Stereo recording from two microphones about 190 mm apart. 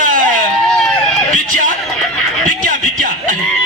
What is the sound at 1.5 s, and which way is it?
Music, 45° right (ahead or behind).